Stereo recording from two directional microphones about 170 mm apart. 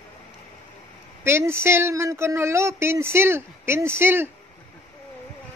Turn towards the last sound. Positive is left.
turn(degrees=-15)  # may be behind; listen again after turning